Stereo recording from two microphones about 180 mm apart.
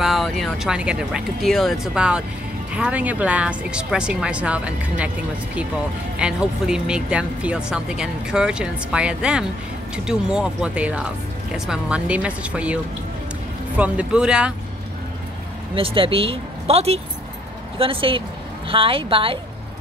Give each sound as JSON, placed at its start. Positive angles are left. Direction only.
{"t": 0.0, "sound": "speech", "side_deg": 0}
{"t": 6.1, "sound": "speech", "side_deg": -5}
{"t": 15.7, "sound": "a woman's voice", "side_deg": -30}